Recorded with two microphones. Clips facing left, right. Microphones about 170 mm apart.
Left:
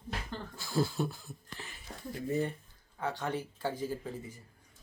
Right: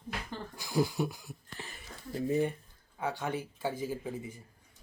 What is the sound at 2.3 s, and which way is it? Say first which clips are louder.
Speech: right 3 dB; 15° right (ahead or behind).